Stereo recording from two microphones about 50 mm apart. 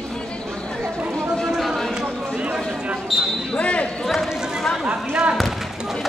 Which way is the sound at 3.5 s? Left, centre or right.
Left.